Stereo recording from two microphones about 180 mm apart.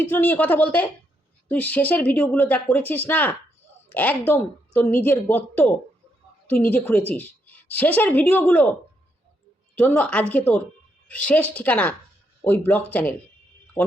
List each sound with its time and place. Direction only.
0.0 s speech: 10° left (ahead or behind)
9.7 s speech: 10° left (ahead or behind)